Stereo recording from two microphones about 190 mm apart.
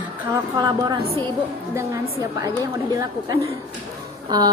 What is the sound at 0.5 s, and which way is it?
Speech, 20° right (ahead or behind).